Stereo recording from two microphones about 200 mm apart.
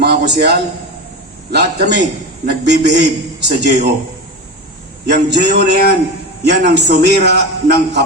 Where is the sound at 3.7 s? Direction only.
40° right (ahead or behind).